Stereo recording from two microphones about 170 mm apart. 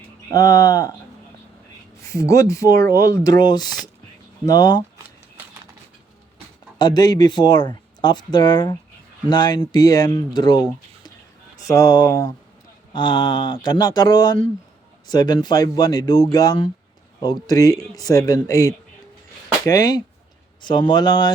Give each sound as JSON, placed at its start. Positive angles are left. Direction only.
{"t": 0.3, "sound": "speech", "side_deg": 20}
{"t": 2.0, "sound": "speech", "side_deg": 20}
{"t": 6.7, "sound": "speech", "side_deg": 25}